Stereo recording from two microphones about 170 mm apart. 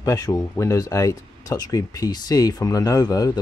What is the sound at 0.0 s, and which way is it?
Speech, 20° left (ahead or behind).